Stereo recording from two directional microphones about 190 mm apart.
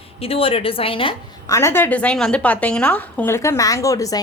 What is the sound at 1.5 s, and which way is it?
A woman's voice, 15° left (ahead or behind).